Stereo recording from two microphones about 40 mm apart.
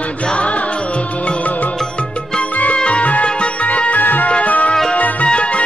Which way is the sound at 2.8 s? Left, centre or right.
Left.